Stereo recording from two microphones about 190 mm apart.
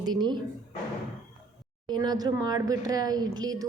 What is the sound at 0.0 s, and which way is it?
Speech, 20° right (ahead or behind).